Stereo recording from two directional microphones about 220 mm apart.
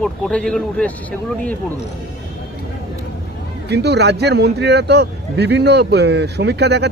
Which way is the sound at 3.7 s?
50° right (ahead or behind).